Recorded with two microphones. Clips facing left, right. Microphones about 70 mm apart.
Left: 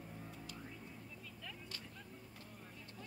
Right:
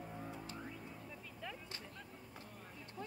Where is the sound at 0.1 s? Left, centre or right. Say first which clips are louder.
Right 4 dB; right.